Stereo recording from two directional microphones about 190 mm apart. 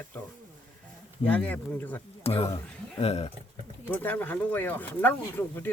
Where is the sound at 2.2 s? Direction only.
30° left (ahead or behind).